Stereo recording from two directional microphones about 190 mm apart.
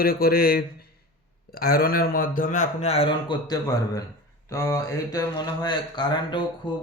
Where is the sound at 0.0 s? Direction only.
50° left (ahead or behind); by 4.0 s 20° left (ahead or behind).